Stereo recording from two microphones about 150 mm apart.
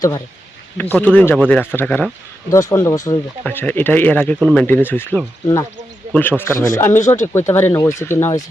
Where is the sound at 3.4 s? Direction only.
10° left (ahead or behind).